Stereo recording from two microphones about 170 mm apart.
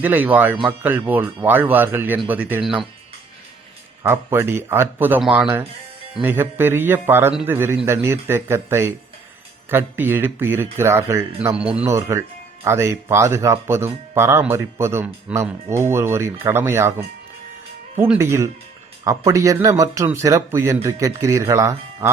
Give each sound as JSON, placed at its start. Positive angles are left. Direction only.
{"t": 0.0, "sound": "speech", "side_deg": -10}
{"t": 4.0, "sound": "speech", "side_deg": -15}
{"t": 17.9, "sound": "speech", "side_deg": -15}